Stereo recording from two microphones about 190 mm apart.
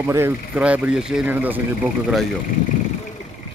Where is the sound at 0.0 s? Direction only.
15° right (ahead or behind).